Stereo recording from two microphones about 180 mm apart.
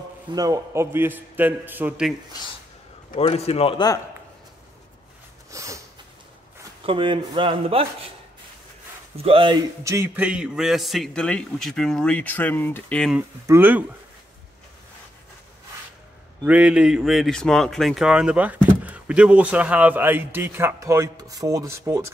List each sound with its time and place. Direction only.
0.3 s speech: 20° right (ahead or behind)
3.2 s a man's voice: 35° left (ahead or behind)
5.5 s a sound: 15° right (ahead or behind)
6.9 s speech: 30° right (ahead or behind)
9.1 s speech: 30° right (ahead or behind)
9.8 s a man's voice: 15° right (ahead or behind); by 13.2 s 5° left (ahead or behind)
13.5 s speech: 10° right (ahead or behind)
16.4 s speech: 5° right (ahead or behind)